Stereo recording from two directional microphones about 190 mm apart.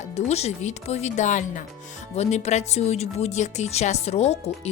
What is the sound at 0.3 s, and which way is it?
Speech, 35° left (ahead or behind).